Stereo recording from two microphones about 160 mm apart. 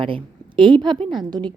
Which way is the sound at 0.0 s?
30° right (ahead or behind).